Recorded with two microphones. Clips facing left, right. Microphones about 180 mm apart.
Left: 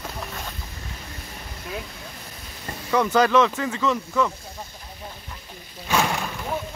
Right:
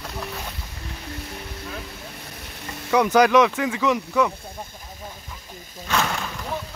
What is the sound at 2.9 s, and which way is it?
Speech, 15° right (ahead or behind).